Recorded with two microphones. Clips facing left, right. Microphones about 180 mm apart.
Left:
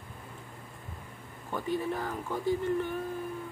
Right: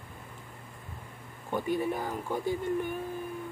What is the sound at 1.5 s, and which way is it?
Speech, 10° right (ahead or behind).